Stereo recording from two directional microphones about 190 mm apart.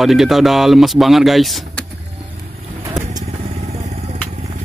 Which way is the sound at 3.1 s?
40° right (ahead or behind).